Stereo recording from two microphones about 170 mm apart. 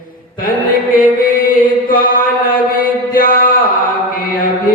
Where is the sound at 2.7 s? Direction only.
55° left (ahead or behind).